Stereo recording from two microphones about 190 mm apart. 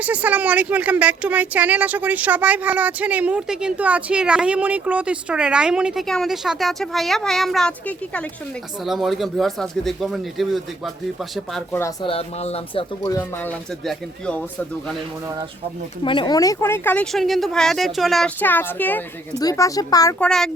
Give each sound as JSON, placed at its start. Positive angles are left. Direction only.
{"t": 0.0, "sound": "speech", "side_deg": -10}
{"t": 12.0, "sound": "speech", "side_deg": 30}
{"t": 13.1, "sound": "speech", "side_deg": 20}
{"t": 13.5, "sound": "speech", "side_deg": 5}
{"t": 16.0, "sound": "speech", "side_deg": 25}
{"t": 20.1, "sound": "speech", "side_deg": 5}